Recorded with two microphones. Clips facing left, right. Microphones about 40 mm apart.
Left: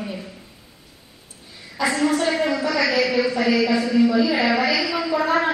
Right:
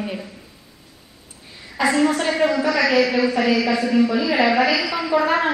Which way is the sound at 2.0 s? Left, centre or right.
Right.